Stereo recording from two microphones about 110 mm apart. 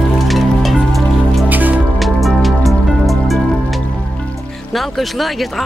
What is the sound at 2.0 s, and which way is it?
Music, centre (ahead or behind).